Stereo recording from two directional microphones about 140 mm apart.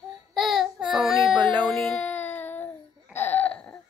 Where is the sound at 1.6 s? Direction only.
5° left (ahead or behind).